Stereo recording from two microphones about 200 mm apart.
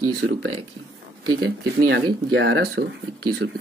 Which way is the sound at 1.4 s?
55° right (ahead or behind).